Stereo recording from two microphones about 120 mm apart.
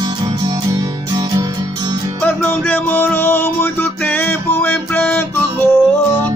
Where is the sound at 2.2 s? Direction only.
15° left (ahead or behind).